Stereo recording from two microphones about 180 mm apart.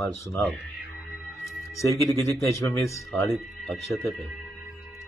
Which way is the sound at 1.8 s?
15° left (ahead or behind).